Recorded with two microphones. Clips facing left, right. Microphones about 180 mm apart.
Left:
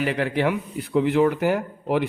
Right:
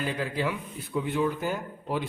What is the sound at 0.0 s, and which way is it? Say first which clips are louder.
Speech: left 7 dB; 75° left (ahead or behind).